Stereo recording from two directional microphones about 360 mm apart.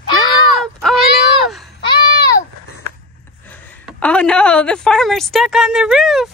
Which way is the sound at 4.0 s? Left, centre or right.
Centre.